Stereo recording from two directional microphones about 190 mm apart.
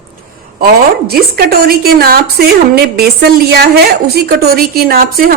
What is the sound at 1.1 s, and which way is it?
A woman's voice, 55° right (ahead or behind).